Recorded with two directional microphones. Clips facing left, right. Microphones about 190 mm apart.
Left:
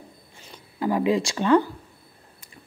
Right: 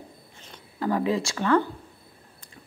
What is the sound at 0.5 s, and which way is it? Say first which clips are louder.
Speech: left 2 dB; 15° left (ahead or behind).